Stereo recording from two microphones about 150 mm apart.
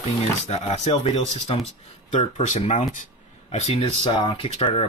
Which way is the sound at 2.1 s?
55° left (ahead or behind).